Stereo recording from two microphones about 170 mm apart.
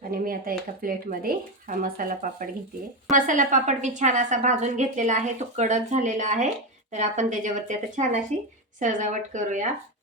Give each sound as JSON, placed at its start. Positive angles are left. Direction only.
{"t": 0.1, "sound": "a woman's voice", "side_deg": -55}